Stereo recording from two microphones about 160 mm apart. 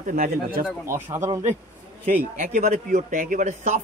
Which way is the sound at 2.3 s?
55° right (ahead or behind).